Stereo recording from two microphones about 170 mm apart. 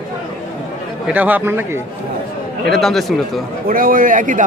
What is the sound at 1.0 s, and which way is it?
Speech, 10° right (ahead or behind).